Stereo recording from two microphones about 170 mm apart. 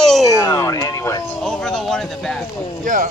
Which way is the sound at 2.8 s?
50° right (ahead or behind).